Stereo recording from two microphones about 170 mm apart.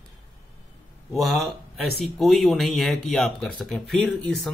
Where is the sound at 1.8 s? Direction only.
Centre (ahead or behind).